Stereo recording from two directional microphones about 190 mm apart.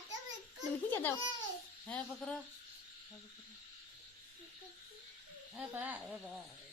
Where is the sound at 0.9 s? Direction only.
10° left (ahead or behind).